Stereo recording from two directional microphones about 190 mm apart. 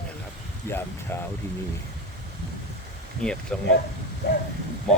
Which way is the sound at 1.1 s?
10° left (ahead or behind).